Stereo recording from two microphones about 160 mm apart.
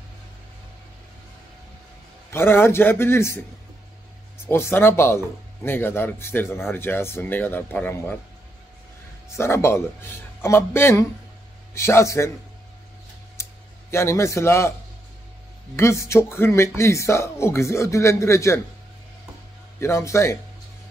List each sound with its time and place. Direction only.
2.3 s speech: 15° left (ahead or behind)
4.5 s speech: 15° left (ahead or behind)
9.3 s speech: 20° left (ahead or behind)
13.4 s a sound: 15° left (ahead or behind)
15.7 s speech: 15° left (ahead or behind)
19.8 s speech: 15° left (ahead or behind)